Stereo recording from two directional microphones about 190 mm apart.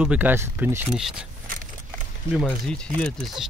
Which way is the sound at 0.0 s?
10° right (ahead or behind).